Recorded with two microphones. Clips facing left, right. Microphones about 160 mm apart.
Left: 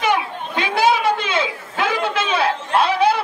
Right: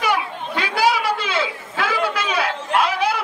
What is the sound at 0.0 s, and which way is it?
Chatter, 20° left (ahead or behind).